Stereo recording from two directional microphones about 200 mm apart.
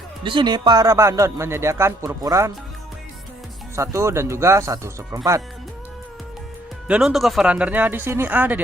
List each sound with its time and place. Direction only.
0.2 s speech: 25° right (ahead or behind)
3.8 s speech: 15° right (ahead or behind)
6.8 s speech: 5° right (ahead or behind)